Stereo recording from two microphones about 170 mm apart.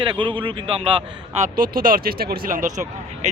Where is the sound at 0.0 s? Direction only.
30° right (ahead or behind).